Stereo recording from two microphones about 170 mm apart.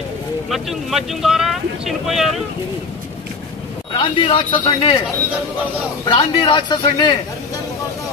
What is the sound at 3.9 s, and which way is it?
Speech, 30° left (ahead or behind).